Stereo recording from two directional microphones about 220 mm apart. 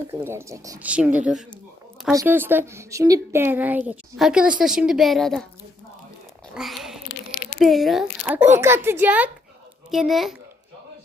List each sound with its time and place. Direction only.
0.1 s a woman's voice: 10° right (ahead or behind)
6.5 s a sound: centre (ahead or behind)
7.6 s a woman's voice: centre (ahead or behind)